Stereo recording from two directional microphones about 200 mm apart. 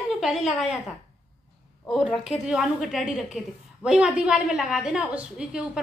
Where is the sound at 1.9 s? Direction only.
Centre (ahead or behind).